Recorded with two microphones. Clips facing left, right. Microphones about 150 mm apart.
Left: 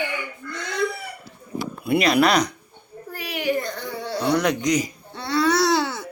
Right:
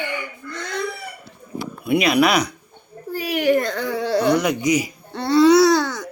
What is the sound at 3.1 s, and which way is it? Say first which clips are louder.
A child's voice: right 6 dB; 45° right (ahead or behind).